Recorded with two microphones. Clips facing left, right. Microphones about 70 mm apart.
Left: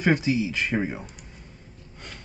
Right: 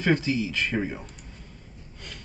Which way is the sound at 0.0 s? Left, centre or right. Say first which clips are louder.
Left 2 dB; centre.